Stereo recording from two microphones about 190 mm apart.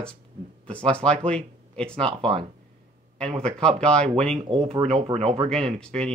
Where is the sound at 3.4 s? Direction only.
5° left (ahead or behind).